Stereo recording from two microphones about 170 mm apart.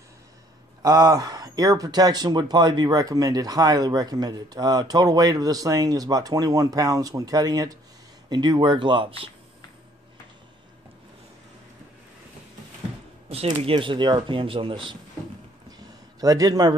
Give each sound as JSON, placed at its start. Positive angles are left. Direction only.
{"t": 0.8, "sound": "speech", "side_deg": -20}
{"t": 13.3, "sound": "speech", "side_deg": -35}
{"t": 16.2, "sound": "speech", "side_deg": -20}